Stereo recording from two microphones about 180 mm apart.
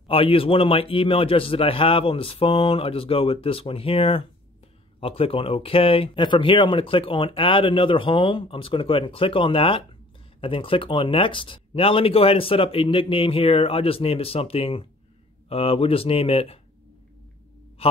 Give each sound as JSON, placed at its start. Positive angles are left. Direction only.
{"t": 0.1, "sound": "speech", "side_deg": 30}